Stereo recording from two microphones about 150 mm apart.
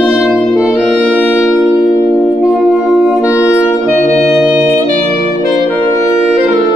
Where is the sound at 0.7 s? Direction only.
10° left (ahead or behind).